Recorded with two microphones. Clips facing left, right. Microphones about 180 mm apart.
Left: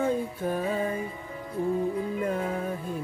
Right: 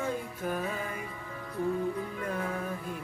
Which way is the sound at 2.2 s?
25° left (ahead or behind).